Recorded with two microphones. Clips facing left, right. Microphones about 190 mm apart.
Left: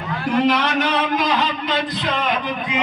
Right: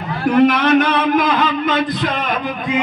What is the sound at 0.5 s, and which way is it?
A man's voice, 55° right (ahead or behind).